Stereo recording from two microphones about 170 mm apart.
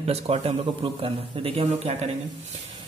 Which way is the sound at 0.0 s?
35° right (ahead or behind).